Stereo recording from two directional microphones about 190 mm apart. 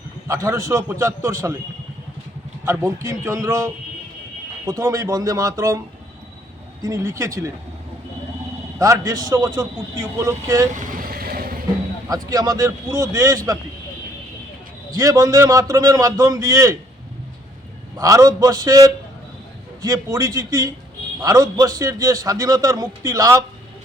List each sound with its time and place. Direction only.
0.3 s a man's voice: 15° right (ahead or behind)
2.6 s a man's voice: 15° right (ahead or behind)
6.8 s a man's voice: 15° right (ahead or behind)
8.8 s a man's voice: 20° right (ahead or behind)
10.7 s vehicle: 45° right (ahead or behind)
12.0 s a man's voice: 20° right (ahead or behind)
14.9 s a man's voice: 20° right (ahead or behind)
17.9 s a man's voice: 20° right (ahead or behind)